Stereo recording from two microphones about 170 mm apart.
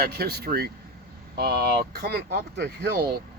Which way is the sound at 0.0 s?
70° right (ahead or behind).